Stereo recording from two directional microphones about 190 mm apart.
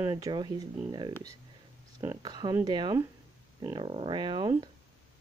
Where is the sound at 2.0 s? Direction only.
20° right (ahead or behind).